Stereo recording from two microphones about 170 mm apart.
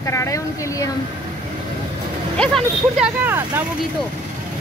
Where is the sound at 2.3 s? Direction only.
Centre (ahead or behind).